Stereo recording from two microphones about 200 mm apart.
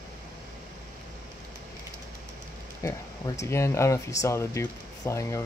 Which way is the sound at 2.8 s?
15° left (ahead or behind).